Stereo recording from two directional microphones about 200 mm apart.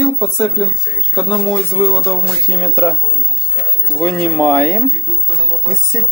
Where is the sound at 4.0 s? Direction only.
10° left (ahead or behind).